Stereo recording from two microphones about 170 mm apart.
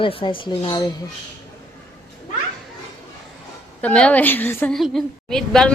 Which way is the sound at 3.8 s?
5° left (ahead or behind).